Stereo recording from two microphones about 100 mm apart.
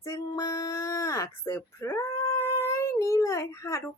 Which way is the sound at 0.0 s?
30° left (ahead or behind).